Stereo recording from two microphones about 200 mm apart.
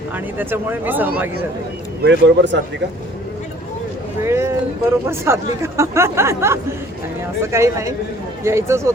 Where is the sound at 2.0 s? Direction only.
60° right (ahead or behind).